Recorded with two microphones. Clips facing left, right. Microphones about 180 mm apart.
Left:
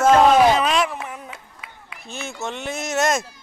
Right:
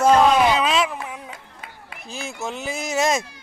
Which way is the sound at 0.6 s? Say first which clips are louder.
Even; centre (ahead or behind).